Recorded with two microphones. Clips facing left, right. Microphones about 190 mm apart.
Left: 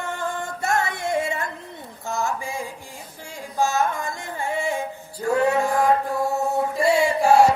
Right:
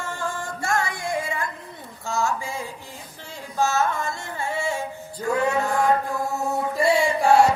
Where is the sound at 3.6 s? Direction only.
15° left (ahead or behind).